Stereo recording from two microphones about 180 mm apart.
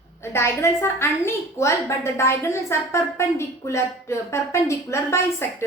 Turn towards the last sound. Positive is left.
turn(degrees=15)  # may be behind; listen again after turning